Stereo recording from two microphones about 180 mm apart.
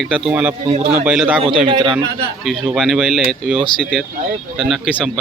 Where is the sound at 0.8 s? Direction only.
50° right (ahead or behind).